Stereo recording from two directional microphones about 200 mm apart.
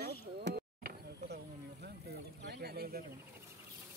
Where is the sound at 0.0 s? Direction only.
55° right (ahead or behind).